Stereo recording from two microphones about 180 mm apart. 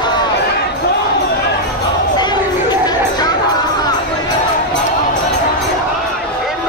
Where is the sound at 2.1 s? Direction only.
25° left (ahead or behind).